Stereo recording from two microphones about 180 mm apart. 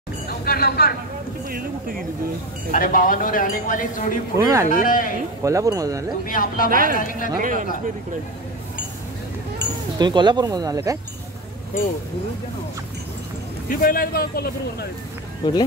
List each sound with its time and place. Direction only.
0.3 s speech: 55° left (ahead or behind)
2.7 s speech: 50° left (ahead or behind)
4.4 s speech: 15° right (ahead or behind)
4.6 s speech: 50° left (ahead or behind)
5.4 s speech: 20° right (ahead or behind)
6.2 s speech: 50° left (ahead or behind)
6.7 s speech: 50° right (ahead or behind)
7.0 s speech: 50° left (ahead or behind)
9.9 s speech: 25° right (ahead or behind)
13.7 s speech: 50° left (ahead or behind)
15.4 s speech: 25° left (ahead or behind)